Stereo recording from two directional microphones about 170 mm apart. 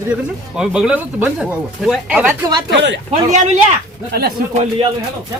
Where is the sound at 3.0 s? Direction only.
45° right (ahead or behind).